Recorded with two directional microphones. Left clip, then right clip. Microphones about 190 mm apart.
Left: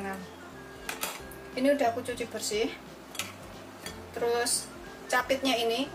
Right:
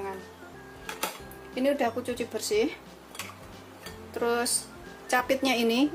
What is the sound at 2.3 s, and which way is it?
Speech, 45° right (ahead or behind).